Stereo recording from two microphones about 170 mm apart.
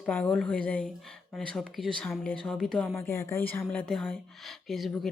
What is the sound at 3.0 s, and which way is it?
Speech, 15° left (ahead or behind).